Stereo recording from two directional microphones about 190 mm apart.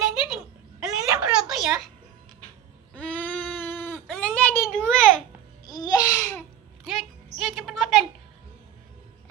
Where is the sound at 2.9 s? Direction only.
5° left (ahead or behind).